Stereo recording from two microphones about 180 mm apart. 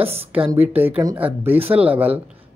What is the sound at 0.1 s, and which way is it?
Speech, 10° right (ahead or behind).